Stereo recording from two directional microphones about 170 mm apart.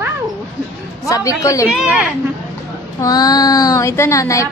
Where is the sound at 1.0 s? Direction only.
20° left (ahead or behind).